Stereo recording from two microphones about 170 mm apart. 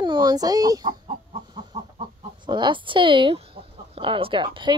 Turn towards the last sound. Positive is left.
turn(degrees=-30)  # may be behind; listen again after turning